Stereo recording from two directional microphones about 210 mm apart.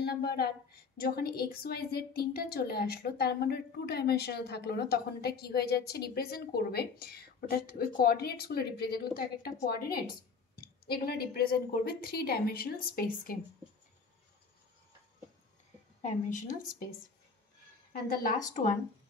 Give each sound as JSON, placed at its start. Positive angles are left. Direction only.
{"t": 0.0, "sound": "a woman's voice", "side_deg": 50}
{"t": 16.0, "sound": "a woman's voice", "side_deg": 35}
{"t": 18.0, "sound": "a woman's voice", "side_deg": 45}